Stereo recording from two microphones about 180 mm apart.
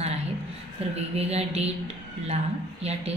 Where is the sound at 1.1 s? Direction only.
35° right (ahead or behind).